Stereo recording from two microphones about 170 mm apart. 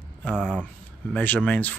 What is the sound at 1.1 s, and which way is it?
Speech, 10° left (ahead or behind).